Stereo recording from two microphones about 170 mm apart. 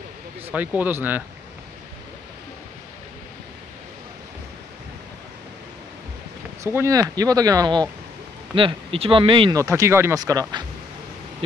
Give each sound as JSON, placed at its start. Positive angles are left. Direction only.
{"t": 0.5, "sound": "speech", "side_deg": -10}
{"t": 6.6, "sound": "speech", "side_deg": -15}
{"t": 9.6, "sound": "speech", "side_deg": -20}